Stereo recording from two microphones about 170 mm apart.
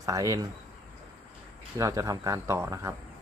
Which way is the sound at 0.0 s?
20° right (ahead or behind).